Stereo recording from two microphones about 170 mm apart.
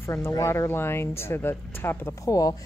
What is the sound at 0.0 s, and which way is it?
Speech, 15° left (ahead or behind).